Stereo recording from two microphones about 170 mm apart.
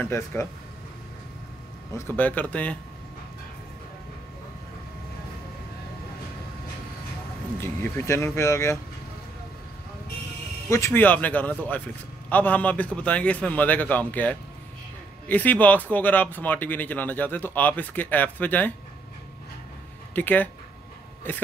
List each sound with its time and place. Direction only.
0.0 s speech: 15° left (ahead or behind)
2.0 s speech: 10° left (ahead or behind)
7.5 s speech: 15° left (ahead or behind)
10.7 s speech: 15° left (ahead or behind)
20.2 s speech: 10° left (ahead or behind)